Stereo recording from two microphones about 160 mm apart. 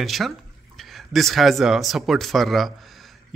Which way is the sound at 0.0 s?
Centre (ahead or behind).